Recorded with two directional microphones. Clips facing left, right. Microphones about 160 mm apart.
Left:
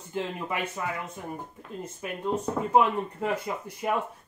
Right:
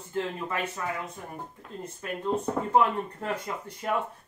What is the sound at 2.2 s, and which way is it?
Speech, 10° left (ahead or behind).